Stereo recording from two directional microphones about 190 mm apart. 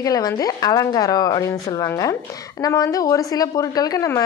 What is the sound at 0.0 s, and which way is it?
A woman's voice, 20° left (ahead or behind).